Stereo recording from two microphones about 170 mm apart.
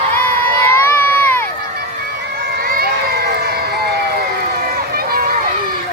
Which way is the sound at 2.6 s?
60° right (ahead or behind).